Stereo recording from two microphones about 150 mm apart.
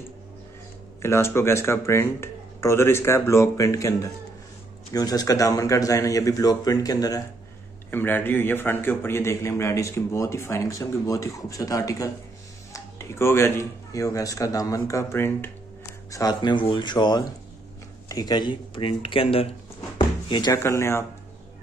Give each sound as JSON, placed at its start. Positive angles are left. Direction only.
{"t": 1.0, "sound": "a man's voice", "side_deg": 15}
{"t": 20.0, "sound": "a sound", "side_deg": 30}
{"t": 20.6, "sound": "speech", "side_deg": 15}